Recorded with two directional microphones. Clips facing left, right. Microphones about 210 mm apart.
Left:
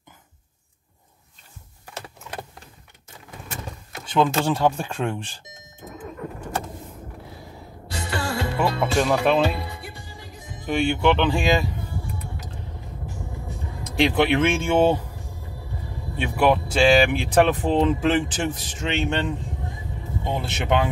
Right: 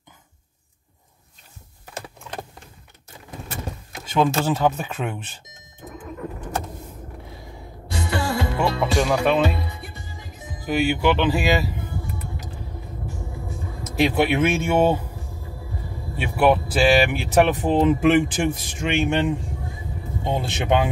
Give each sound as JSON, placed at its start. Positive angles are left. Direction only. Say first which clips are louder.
{"t": 4.1, "sound": "speech", "louder": "even", "side_deg": -5}
{"t": 8.5, "sound": "speech", "louder": "left 1 dB", "side_deg": 0}
{"t": 10.6, "sound": "speech", "louder": "even", "side_deg": -5}
{"t": 13.8, "sound": "speech", "louder": "even", "side_deg": -5}
{"t": 16.2, "sound": "speech", "louder": "right 1 dB", "side_deg": -5}